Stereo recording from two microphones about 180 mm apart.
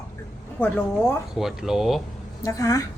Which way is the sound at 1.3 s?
Centre (ahead or behind).